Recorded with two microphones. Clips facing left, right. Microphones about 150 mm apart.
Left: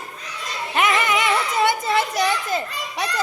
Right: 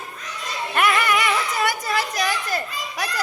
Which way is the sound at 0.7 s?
20° left (ahead or behind).